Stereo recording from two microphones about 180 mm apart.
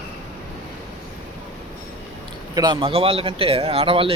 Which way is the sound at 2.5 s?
25° right (ahead or behind).